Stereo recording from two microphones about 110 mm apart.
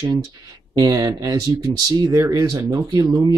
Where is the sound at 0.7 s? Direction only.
35° right (ahead or behind).